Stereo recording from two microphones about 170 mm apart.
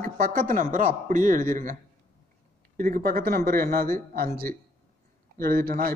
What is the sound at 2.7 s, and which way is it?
Speech, 55° right (ahead or behind).